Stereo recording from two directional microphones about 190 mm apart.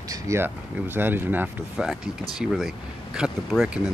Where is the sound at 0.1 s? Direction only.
15° right (ahead or behind).